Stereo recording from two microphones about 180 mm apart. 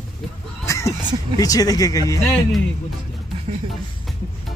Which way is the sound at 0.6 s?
15° left (ahead or behind).